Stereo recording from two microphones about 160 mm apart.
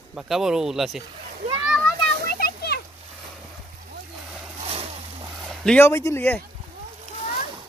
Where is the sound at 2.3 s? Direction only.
75° left (ahead or behind).